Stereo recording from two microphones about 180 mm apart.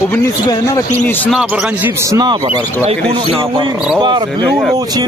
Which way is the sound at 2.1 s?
25° right (ahead or behind).